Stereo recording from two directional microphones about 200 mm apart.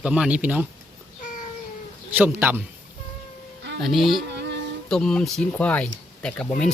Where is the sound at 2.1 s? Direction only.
10° right (ahead or behind).